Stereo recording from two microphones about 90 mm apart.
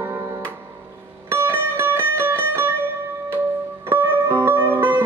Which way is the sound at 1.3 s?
25° right (ahead or behind).